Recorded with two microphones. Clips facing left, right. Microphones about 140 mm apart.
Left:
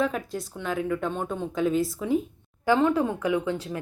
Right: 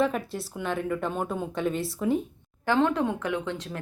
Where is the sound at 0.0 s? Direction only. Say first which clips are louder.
Right 1 dB; centre (ahead or behind).